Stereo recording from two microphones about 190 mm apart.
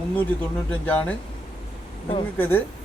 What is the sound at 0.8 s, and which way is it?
Speech, 10° left (ahead or behind).